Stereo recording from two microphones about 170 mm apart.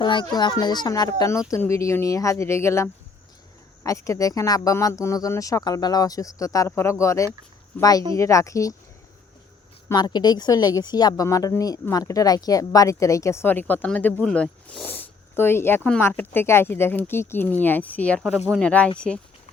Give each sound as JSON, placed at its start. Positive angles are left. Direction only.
{"t": 0.0, "sound": "speech", "side_deg": 25}
{"t": 9.9, "sound": "speech", "side_deg": 25}
{"t": 18.3, "sound": "speech", "side_deg": -5}